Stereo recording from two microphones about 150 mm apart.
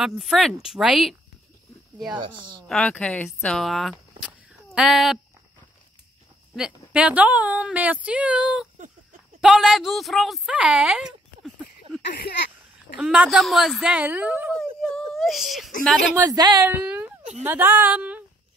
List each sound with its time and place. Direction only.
0.0 s speech: centre (ahead or behind)
2.1 s a woman's voice: 30° right (ahead or behind)
2.7 s speech: 5° left (ahead or behind)
4.2 s a sound: 5° right (ahead or behind)
6.5 s speech: 5° right (ahead or behind)
12.1 s speech: 90° left
12.9 s speech: 5° right (ahead or behind)
14.5 s a sound: 5° left (ahead or behind)
16.3 s speech: 25° right (ahead or behind)
16.6 s speech: 10° right (ahead or behind)